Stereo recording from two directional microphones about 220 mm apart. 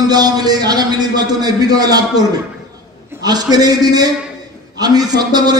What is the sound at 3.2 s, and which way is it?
A man's voice, 15° right (ahead or behind).